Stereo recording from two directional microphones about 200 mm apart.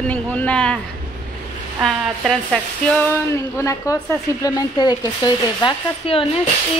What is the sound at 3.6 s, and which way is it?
A woman's voice, 15° left (ahead or behind).